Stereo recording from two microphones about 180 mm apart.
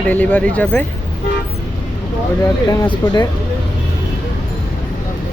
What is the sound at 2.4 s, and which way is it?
Speech, 15° left (ahead or behind).